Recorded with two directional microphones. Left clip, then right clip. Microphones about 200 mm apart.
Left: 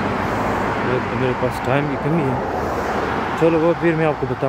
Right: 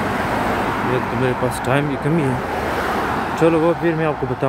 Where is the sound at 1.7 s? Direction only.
10° right (ahead or behind).